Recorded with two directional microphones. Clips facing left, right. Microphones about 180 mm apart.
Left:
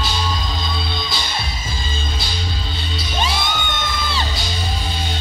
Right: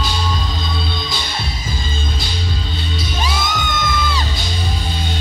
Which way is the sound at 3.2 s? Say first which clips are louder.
Even; 30° left (ahead or behind).